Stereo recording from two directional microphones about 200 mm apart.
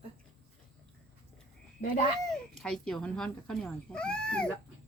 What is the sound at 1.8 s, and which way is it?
Speech, 35° left (ahead or behind).